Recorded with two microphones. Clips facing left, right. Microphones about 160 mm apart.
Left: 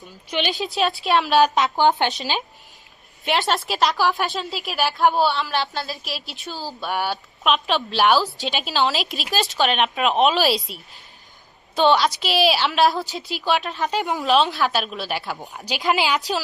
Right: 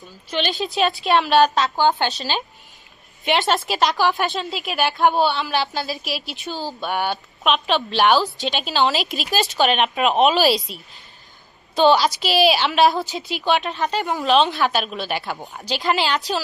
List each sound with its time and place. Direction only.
0.3 s a woman's voice: 15° left (ahead or behind)
0.5 s a woman's voice: centre (ahead or behind)
1.5 s speech: 20° left (ahead or behind)
3.2 s a woman's voice: centre (ahead or behind)